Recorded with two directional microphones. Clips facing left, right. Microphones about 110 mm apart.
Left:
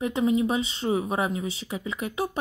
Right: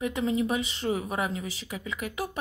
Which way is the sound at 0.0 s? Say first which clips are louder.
Left 4 dB; 25° left (ahead or behind).